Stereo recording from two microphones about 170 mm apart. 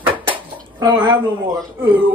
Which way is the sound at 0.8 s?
25° right (ahead or behind).